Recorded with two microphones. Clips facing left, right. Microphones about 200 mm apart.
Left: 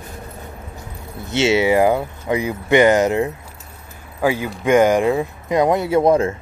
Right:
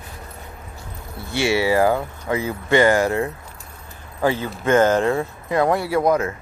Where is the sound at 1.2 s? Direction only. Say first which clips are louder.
Left 4 dB; 20° left (ahead or behind).